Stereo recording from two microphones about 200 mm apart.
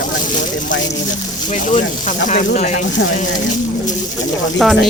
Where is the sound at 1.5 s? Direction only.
40° left (ahead or behind).